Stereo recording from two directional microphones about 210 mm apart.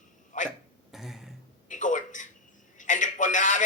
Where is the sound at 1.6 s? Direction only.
35° left (ahead or behind).